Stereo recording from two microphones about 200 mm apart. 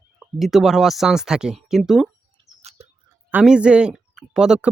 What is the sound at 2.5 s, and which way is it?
Bird, 15° left (ahead or behind).